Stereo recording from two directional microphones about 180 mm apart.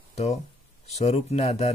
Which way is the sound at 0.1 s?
35° left (ahead or behind).